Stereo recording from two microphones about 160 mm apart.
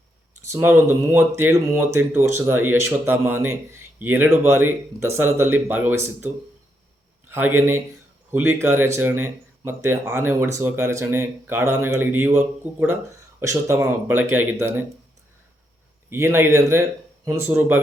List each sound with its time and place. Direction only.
0.5 s a man's voice: 15° right (ahead or behind)
16.0 s speech: 15° right (ahead or behind)